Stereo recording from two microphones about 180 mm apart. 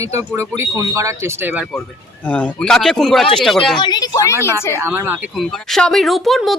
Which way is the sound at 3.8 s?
25° left (ahead or behind).